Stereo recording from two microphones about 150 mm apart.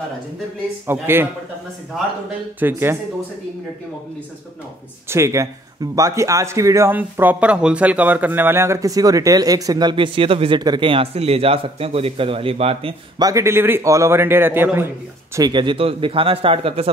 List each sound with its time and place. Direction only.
0.8 s speech: 15° right (ahead or behind)
1.9 s speech: centre (ahead or behind)
2.6 s speech: 15° right (ahead or behind)
5.0 s a man's voice: 20° right (ahead or behind); by 12.9 s 40° right (ahead or behind)
13.2 s speech: 20° right (ahead or behind)
15.3 s speech: 30° right (ahead or behind)